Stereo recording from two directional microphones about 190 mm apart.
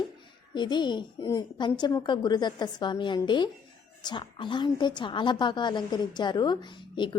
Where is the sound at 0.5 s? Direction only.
25° left (ahead or behind).